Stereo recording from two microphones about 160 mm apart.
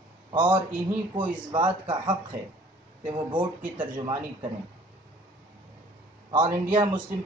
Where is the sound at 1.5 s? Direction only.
30° right (ahead or behind).